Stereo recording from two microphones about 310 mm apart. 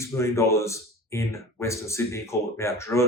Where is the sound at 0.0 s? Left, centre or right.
Centre.